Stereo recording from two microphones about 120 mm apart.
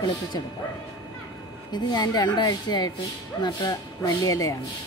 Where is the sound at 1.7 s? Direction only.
35° left (ahead or behind).